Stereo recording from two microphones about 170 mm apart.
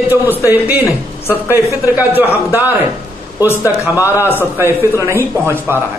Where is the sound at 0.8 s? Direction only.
15° left (ahead or behind).